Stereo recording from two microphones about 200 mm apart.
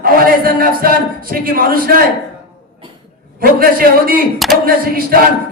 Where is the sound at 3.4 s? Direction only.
45° right (ahead or behind).